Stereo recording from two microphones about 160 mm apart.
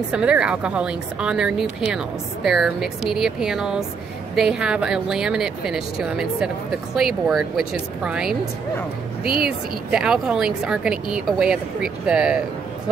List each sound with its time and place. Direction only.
0.1 s a woman's voice: 5° right (ahead or behind)